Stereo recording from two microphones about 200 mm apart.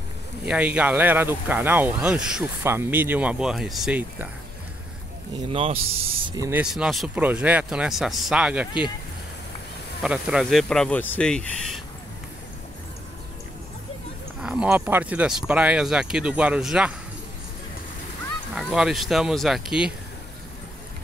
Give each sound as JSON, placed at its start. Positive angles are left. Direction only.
{"t": 0.5, "sound": "speech", "side_deg": -5}
{"t": 5.5, "sound": "speech", "side_deg": -30}
{"t": 6.3, "sound": "speech", "side_deg": -15}
{"t": 6.6, "sound": "speech", "side_deg": -5}
{"t": 10.0, "sound": "speech", "side_deg": -5}
{"t": 14.4, "sound": "speech", "side_deg": -5}
{"t": 18.5, "sound": "speech", "side_deg": 0}